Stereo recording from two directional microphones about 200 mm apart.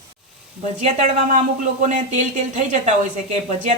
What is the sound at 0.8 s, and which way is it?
Speech, 40° right (ahead or behind).